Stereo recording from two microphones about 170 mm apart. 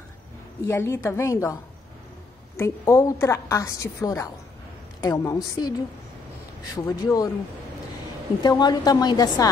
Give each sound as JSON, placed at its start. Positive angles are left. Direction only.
{"t": 0.7, "sound": "a woman's voice", "side_deg": 15}
{"t": 8.4, "sound": "a woman's voice", "side_deg": 25}